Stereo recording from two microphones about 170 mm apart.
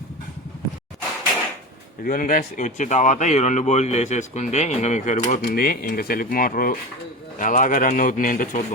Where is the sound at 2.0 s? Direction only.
55° left (ahead or behind).